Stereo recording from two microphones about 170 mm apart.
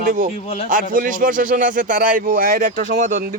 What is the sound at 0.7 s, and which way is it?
Speech, 50° right (ahead or behind).